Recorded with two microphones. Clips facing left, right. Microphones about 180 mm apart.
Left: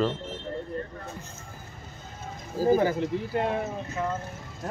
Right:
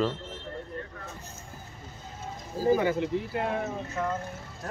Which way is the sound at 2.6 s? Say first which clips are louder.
Left 2 dB; 40° left (ahead or behind).